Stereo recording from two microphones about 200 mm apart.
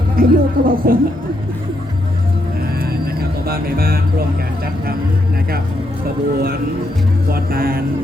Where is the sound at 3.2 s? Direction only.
50° right (ahead or behind).